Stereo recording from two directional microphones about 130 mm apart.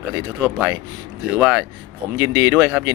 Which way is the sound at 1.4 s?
10° right (ahead or behind).